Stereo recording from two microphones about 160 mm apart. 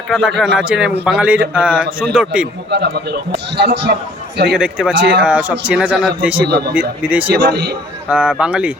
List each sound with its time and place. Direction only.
0.3 s a man's voice: 5° right (ahead or behind)
2.6 s a man's voice: 90° right
4.5 s a man's voice: 5° right (ahead or behind)
6.4 s a man's voice: 85° right
7.0 s a man's voice: 10° right (ahead or behind)
7.3 s a man's voice: 90° right
8.1 s a man's voice: 5° right (ahead or behind)